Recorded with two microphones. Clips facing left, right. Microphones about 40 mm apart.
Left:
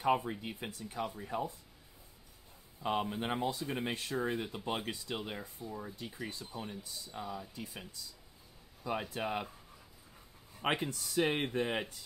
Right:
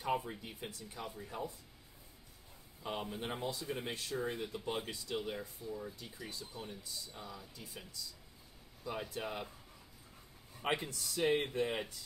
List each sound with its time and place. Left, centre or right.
0.0 s speech: left
2.8 s speech: left
9.1 s speech: left
10.7 s speech: left